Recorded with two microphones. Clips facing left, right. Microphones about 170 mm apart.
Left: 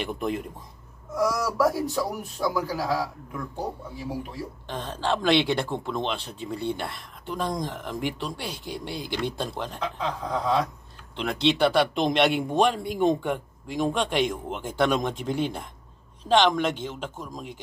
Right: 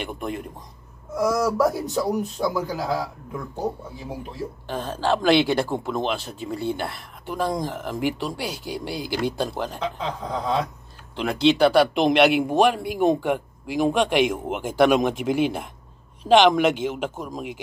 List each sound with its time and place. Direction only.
0.0 s speech: centre (ahead or behind)
1.1 s a man's voice: 20° right (ahead or behind)
4.6 s speech: 5° right (ahead or behind)
9.8 s a man's voice: 25° right (ahead or behind)
11.1 s speech: centre (ahead or behind)